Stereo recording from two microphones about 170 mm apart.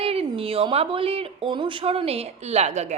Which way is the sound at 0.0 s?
35° right (ahead or behind).